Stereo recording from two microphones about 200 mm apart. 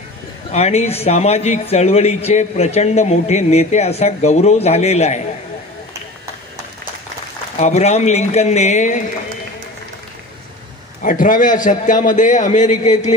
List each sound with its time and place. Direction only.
0.5 s a man's voice: 35° left (ahead or behind)
7.5 s a man's voice: 35° left (ahead or behind)
11.0 s a man's voice: 40° left (ahead or behind)